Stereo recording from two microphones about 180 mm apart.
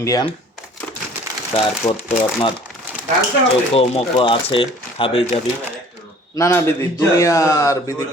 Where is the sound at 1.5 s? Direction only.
35° left (ahead or behind).